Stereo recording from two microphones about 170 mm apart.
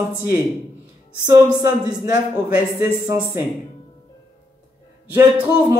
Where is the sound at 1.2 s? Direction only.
20° right (ahead or behind).